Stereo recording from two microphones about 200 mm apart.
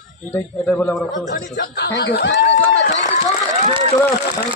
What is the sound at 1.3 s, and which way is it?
A man's voice, 55° left (ahead or behind).